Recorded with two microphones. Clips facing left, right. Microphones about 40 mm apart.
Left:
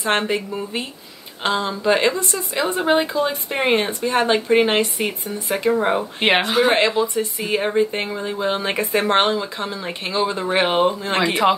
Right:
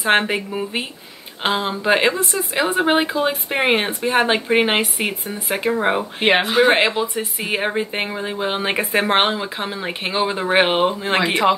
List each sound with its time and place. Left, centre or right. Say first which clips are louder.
0.0 s speech: right 3 dB; right
6.2 s speech: right 1 dB; centre
6.5 s speech: right 1 dB; centre